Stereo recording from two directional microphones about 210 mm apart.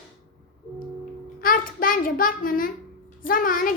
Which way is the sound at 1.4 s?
40° left (ahead or behind).